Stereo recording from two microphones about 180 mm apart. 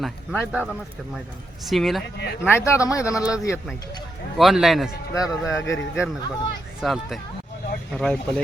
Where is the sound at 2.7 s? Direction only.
15° left (ahead or behind).